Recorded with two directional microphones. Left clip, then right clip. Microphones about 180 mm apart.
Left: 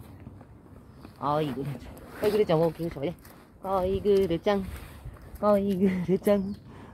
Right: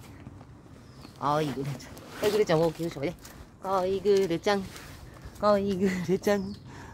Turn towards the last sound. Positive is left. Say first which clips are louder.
# left 2 dB
turn(degrees=15)  # may be behind; listen again after turning